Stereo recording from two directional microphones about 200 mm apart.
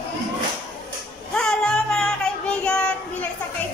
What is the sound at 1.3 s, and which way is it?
Music, 5° left (ahead or behind).